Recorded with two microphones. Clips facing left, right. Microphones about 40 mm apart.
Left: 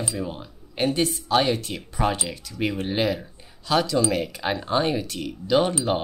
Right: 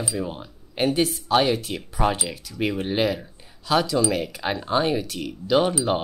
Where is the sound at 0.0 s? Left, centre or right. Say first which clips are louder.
Right 1 dB; centre.